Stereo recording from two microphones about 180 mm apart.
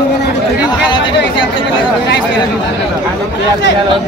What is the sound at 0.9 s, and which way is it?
Chatter, 25° left (ahead or behind).